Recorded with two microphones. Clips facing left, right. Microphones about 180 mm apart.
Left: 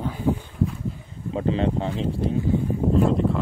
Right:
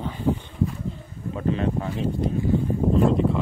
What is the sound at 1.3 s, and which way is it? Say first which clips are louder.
Speech: left 2 dB; 25° left (ahead or behind).